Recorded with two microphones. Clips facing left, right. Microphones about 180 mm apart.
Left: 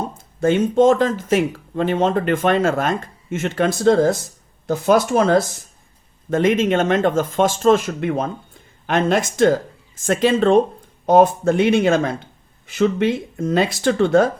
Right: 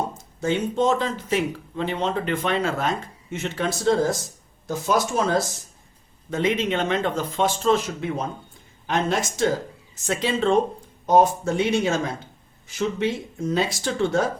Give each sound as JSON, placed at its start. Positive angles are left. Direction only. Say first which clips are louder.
{"t": 0.2, "sound": "a sound", "louder": "left 11 dB", "side_deg": 55}
{"t": 0.8, "sound": "speech", "louder": "left 10 dB", "side_deg": 50}
{"t": 6.3, "sound": "speech", "louder": "left 6 dB", "side_deg": 50}